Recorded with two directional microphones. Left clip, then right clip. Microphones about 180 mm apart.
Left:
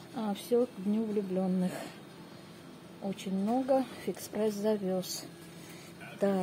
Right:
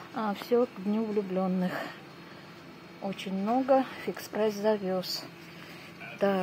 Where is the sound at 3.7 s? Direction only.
10° left (ahead or behind).